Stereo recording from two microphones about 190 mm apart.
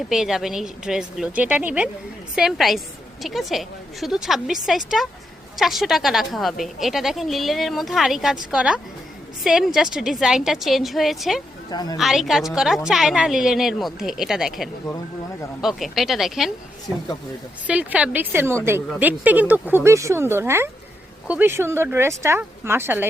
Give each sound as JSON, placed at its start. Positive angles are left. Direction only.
{"t": 0.1, "sound": "a woman's voice", "side_deg": 0}
{"t": 11.7, "sound": "a woman's voice", "side_deg": 20}
{"t": 11.9, "sound": "a woman's voice", "side_deg": 0}
{"t": 17.7, "sound": "speech", "side_deg": -5}